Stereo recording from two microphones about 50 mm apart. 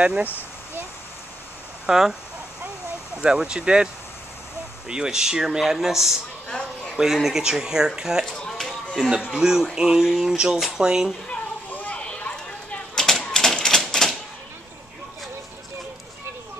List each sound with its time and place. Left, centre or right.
1.9 s speech: centre
3.2 s speech: centre
8.3 s a sound: centre
9.0 s speech: centre
11.2 s children playing: left
12.0 s a sound: left
12.9 s typewriter: centre